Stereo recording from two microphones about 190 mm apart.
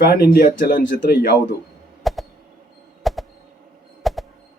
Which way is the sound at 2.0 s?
Centre (ahead or behind).